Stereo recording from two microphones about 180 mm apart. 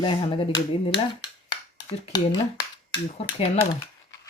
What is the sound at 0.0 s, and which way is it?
Speech, 30° left (ahead or behind).